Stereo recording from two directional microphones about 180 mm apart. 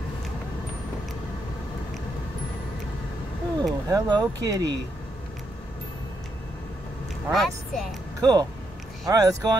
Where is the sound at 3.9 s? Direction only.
20° right (ahead or behind).